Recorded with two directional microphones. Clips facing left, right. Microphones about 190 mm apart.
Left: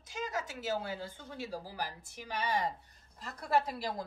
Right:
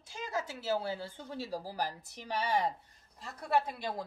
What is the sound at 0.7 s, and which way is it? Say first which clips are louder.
Speech: right 3 dB; 30° right (ahead or behind).